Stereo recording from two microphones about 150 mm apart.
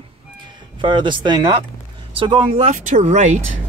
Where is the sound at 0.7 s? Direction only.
35° right (ahead or behind).